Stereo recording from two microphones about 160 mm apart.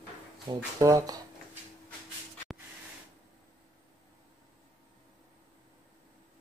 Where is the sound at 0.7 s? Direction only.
20° right (ahead or behind).